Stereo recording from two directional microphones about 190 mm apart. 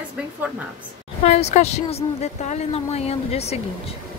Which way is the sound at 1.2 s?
35° left (ahead or behind).